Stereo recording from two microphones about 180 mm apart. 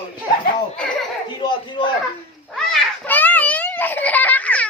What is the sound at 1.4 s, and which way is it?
Speech, 25° left (ahead or behind).